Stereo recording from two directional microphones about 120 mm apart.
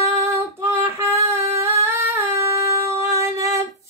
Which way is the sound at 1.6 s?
20° right (ahead or behind).